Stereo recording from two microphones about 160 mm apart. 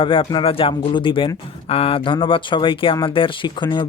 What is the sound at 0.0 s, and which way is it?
Speech, 35° left (ahead or behind).